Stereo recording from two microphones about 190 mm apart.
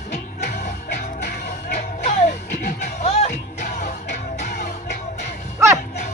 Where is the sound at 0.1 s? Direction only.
50° left (ahead or behind).